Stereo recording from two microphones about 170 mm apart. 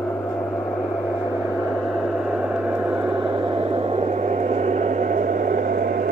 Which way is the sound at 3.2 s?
30° right (ahead or behind).